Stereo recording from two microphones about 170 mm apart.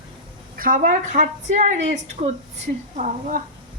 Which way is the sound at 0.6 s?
55° right (ahead or behind).